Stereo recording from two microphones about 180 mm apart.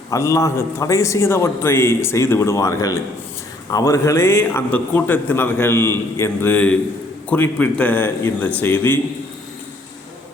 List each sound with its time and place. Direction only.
0.1 s a man's voice: 15° left (ahead or behind)